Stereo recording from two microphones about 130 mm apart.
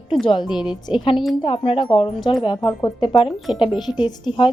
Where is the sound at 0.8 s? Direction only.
40° left (ahead or behind).